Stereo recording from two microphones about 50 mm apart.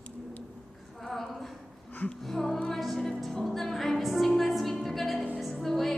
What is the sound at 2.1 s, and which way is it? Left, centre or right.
Music, centre.